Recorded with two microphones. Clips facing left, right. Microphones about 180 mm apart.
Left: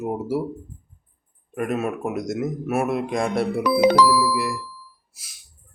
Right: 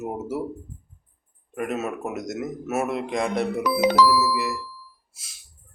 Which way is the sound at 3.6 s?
50° left (ahead or behind).